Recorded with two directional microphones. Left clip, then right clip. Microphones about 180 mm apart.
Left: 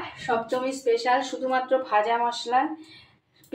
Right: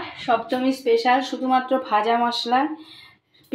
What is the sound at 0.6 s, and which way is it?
Speech, 45° right (ahead or behind).